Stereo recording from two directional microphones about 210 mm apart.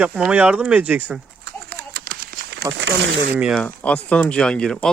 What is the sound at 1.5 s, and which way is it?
Horse, 50° right (ahead or behind).